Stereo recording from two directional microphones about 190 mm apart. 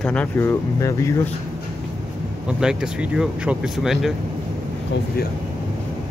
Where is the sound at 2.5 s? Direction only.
5° right (ahead or behind).